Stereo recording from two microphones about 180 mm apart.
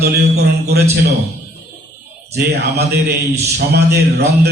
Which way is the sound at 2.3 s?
65° right (ahead or behind).